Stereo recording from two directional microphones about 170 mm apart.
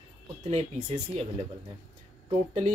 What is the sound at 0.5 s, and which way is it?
Speech, 40° right (ahead or behind).